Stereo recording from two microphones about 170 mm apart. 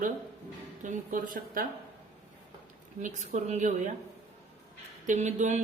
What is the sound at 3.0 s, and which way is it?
Mantra, 45° right (ahead or behind).